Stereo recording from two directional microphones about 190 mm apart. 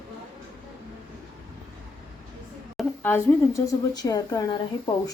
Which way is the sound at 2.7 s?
10° left (ahead or behind).